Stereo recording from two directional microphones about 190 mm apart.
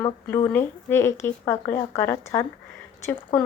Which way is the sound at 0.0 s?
10° left (ahead or behind).